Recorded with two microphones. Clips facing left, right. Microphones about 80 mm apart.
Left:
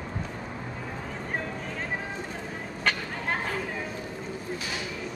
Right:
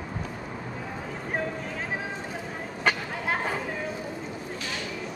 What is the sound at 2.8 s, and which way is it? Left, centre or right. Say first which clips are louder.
Chatter: right 3 dB; centre.